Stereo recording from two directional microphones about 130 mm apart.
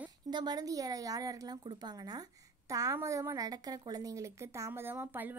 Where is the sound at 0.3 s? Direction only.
35° right (ahead or behind).